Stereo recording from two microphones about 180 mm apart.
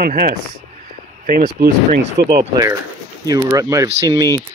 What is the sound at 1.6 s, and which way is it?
Speech, 65° right (ahead or behind).